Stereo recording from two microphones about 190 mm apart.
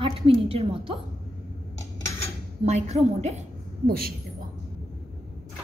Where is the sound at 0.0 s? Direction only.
30° right (ahead or behind).